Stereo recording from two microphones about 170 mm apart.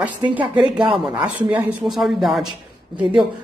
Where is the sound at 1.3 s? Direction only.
5° right (ahead or behind).